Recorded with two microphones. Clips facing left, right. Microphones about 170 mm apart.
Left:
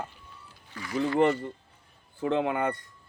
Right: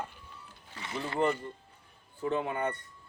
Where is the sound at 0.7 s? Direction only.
25° right (ahead or behind).